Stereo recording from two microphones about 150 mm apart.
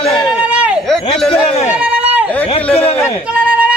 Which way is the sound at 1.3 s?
40° left (ahead or behind).